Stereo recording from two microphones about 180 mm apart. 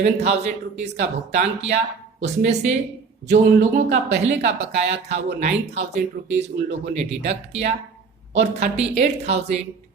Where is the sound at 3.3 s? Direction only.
70° right (ahead or behind).